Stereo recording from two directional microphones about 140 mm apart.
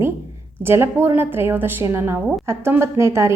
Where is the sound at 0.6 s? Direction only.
15° right (ahead or behind).